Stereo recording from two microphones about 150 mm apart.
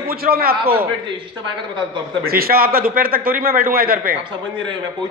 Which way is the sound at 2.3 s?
85° right.